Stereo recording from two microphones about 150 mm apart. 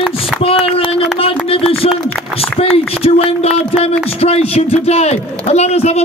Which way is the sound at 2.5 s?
40° left (ahead or behind).